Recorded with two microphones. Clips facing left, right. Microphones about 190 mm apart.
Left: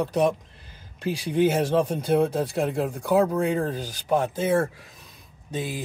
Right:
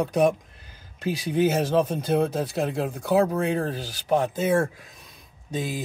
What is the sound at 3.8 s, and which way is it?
Speech, 10° left (ahead or behind).